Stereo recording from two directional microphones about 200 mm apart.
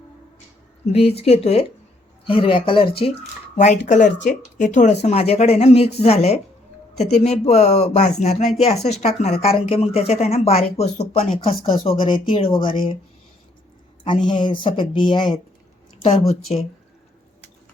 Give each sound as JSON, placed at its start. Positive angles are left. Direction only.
{"t": 0.9, "sound": "speech", "side_deg": 30}
{"t": 14.3, "sound": "speech", "side_deg": 25}
{"t": 16.5, "sound": "speech", "side_deg": 30}